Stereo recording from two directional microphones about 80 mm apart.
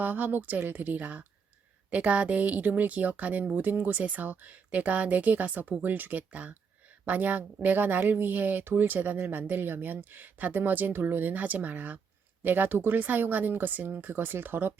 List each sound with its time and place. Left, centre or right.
0.0 s speech: right